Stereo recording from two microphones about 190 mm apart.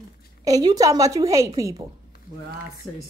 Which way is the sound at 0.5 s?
20° right (ahead or behind).